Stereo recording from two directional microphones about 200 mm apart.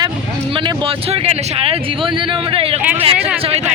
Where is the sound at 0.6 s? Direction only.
30° right (ahead or behind).